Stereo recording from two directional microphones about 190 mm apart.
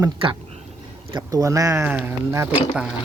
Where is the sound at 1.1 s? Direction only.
20° right (ahead or behind).